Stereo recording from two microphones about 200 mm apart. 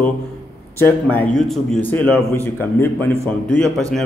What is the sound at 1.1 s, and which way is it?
A man's voice, 5° left (ahead or behind).